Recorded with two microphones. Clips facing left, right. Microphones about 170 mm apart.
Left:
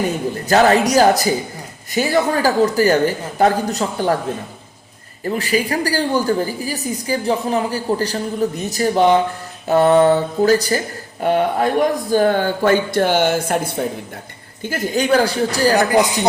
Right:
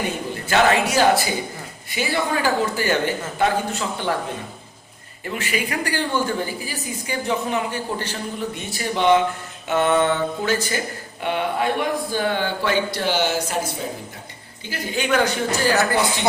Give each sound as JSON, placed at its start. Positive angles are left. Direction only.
{"t": 0.4, "sound": "a woman's voice", "side_deg": 40}
{"t": 5.2, "sound": "a woman's voice", "side_deg": 35}
{"t": 14.6, "sound": "a woman's voice", "side_deg": 45}
{"t": 15.9, "sound": "speech", "side_deg": 15}